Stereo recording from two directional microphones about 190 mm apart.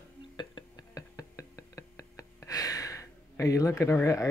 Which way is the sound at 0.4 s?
20° left (ahead or behind).